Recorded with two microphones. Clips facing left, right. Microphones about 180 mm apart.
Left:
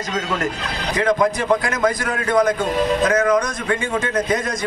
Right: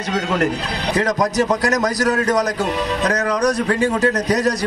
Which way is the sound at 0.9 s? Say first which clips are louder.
Even; 40° right (ahead or behind).